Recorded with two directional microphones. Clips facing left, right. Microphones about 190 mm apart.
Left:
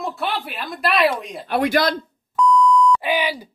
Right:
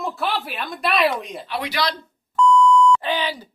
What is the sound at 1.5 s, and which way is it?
Speech, 50° left (ahead or behind).